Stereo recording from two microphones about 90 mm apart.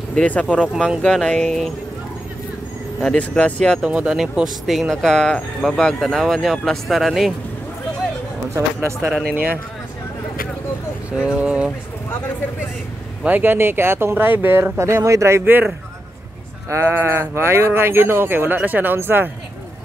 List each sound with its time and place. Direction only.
0.1 s speech: 15° left (ahead or behind)
3.0 s speech: 10° left (ahead or behind)
3.8 s speech: 10° right (ahead or behind)
8.5 s speech: 30° right (ahead or behind)
11.1 s speech: 10° right (ahead or behind)
13.2 s speech: 20° right (ahead or behind)